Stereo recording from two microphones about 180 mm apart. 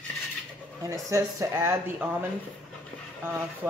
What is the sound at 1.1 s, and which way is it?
Speech, 15° right (ahead or behind).